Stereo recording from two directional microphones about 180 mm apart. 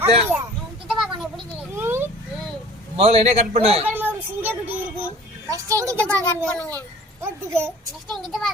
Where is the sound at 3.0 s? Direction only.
35° right (ahead or behind).